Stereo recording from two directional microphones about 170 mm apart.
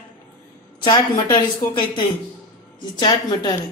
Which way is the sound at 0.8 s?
25° left (ahead or behind).